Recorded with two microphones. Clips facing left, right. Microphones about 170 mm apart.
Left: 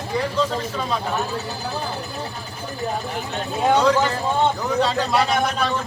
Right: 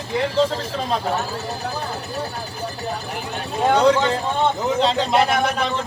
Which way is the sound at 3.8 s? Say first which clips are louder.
Right 2 dB; 30° right (ahead or behind).